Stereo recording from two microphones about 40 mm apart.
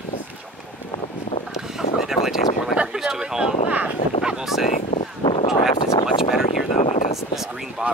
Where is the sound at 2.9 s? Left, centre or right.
Centre.